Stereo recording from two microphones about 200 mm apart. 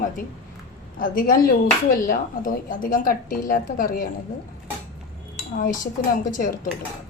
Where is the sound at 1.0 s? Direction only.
45° left (ahead or behind).